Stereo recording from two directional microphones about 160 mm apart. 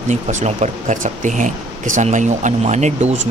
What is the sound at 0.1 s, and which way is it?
Speech, 50° right (ahead or behind).